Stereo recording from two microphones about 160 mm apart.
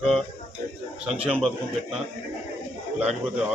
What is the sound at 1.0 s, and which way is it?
Speech, 35° right (ahead or behind).